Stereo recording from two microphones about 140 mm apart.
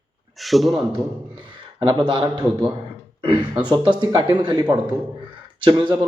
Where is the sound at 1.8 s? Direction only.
35° right (ahead or behind).